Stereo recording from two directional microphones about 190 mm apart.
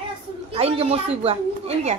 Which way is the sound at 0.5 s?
30° right (ahead or behind).